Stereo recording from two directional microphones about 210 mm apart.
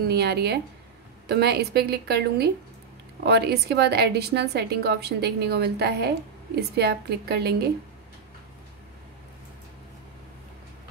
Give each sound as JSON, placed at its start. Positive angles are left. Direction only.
{"t": 0.0, "sound": "a woman's voice", "side_deg": -50}